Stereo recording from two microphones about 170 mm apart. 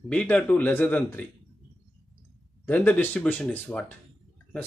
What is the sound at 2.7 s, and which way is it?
Speech, 10° left (ahead or behind).